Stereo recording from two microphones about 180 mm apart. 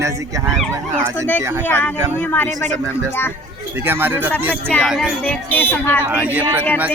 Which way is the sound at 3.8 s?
10° right (ahead or behind).